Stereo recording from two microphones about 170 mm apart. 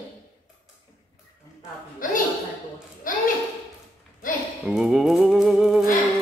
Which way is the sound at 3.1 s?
55° left (ahead or behind).